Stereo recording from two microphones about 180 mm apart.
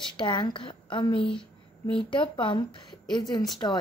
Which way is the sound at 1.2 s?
5° left (ahead or behind).